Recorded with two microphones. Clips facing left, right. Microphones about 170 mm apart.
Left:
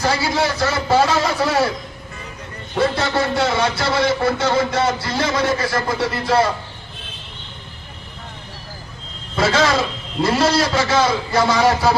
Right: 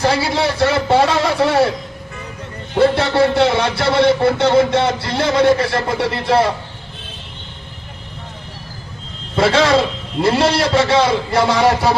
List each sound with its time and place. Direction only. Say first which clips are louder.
0.0 s speech: right 3 dB; 30° right (ahead or behind)
2.7 s speech: right 5 dB; 30° right (ahead or behind)
9.3 s a man's voice: right 4 dB; 30° right (ahead or behind)